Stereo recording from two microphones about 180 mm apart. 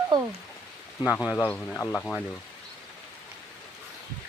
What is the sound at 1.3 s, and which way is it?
Speech, 10° left (ahead or behind).